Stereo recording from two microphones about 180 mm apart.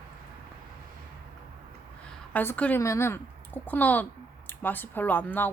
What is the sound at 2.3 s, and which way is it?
Speech, 10° left (ahead or behind).